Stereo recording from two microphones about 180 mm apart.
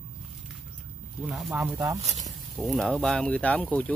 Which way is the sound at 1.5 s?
15° right (ahead or behind).